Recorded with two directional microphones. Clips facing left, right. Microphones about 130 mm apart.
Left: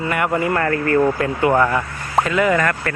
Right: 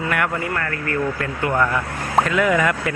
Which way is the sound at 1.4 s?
15° left (ahead or behind).